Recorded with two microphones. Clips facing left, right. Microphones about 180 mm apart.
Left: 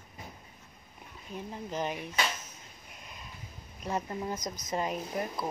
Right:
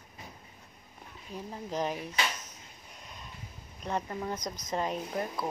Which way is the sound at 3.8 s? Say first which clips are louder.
Even; 5° left (ahead or behind).